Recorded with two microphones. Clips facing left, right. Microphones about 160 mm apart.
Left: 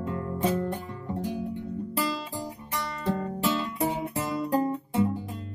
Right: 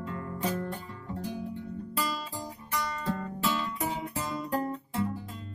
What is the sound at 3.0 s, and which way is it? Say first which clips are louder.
Music: left 7 dB; 20° left (ahead or behind).